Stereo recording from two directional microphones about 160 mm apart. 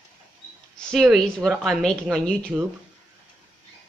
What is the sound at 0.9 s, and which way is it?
Speech, centre (ahead or behind).